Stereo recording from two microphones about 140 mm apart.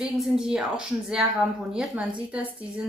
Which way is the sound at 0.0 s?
5° right (ahead or behind).